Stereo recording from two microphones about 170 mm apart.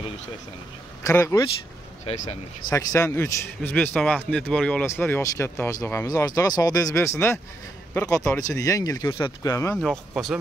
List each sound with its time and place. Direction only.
1.0 s a man's voice: 20° left (ahead or behind)
2.7 s a man's voice: 15° left (ahead or behind)
9.8 s speech: centre (ahead or behind)